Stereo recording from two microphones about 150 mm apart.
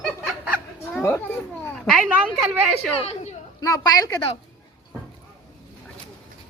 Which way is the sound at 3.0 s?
45° left (ahead or behind).